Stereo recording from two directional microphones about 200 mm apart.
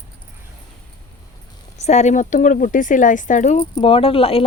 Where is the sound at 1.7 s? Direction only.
35° left (ahead or behind).